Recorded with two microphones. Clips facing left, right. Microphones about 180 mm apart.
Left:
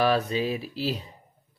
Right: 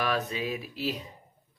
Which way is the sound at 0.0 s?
30° left (ahead or behind).